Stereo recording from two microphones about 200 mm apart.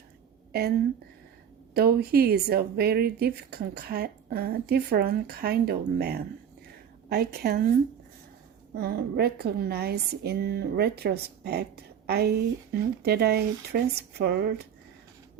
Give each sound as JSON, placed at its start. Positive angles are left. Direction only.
{"t": 1.7, "sound": "a woman's voice", "side_deg": -50}
{"t": 8.7, "sound": "a woman's voice", "side_deg": -50}